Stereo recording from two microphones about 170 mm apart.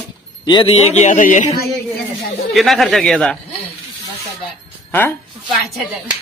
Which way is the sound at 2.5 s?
Centre (ahead or behind).